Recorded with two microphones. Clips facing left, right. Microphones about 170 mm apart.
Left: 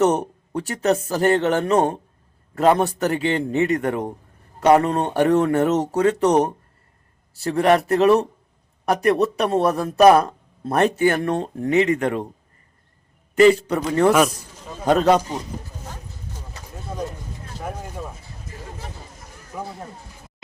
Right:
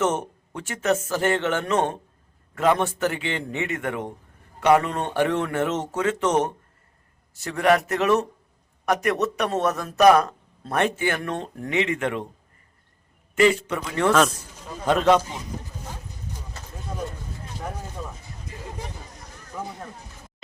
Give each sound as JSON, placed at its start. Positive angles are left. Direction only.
{"t": 0.0, "sound": "speech", "side_deg": 35}
{"t": 13.3, "sound": "speech", "side_deg": 35}
{"t": 14.1, "sound": "speech", "side_deg": 10}
{"t": 14.8, "sound": "speech", "side_deg": 40}
{"t": 17.6, "sound": "a sound", "side_deg": 10}
{"t": 19.1, "sound": "a sound", "side_deg": 10}